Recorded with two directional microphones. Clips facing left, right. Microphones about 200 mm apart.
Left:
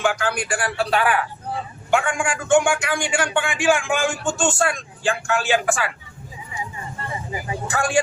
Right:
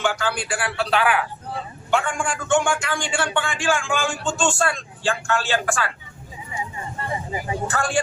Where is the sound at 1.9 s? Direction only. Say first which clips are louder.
Left 2 dB; 10° left (ahead or behind).